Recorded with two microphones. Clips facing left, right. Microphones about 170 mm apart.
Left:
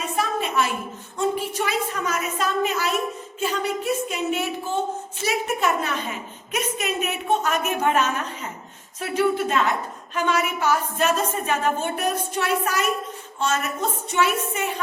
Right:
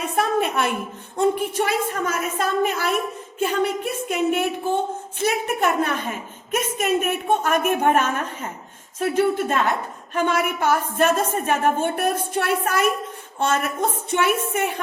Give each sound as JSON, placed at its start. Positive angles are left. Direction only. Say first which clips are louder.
{"t": 0.0, "sound": "a woman's voice", "louder": "right 4 dB", "side_deg": -60}
{"t": 4.1, "sound": "a woman's voice", "louder": "right 4 dB", "side_deg": -55}